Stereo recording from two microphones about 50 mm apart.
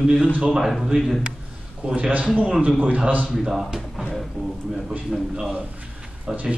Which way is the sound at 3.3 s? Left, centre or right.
Centre.